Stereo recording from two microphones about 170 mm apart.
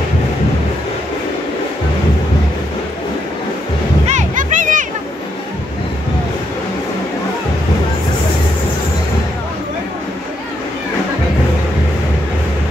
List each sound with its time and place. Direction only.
4.1 s music: 45° right (ahead or behind)